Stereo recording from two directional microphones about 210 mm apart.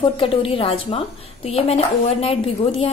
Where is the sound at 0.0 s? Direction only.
25° left (ahead or behind).